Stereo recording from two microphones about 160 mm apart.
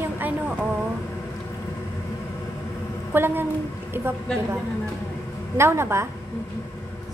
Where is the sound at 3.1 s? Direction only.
15° right (ahead or behind).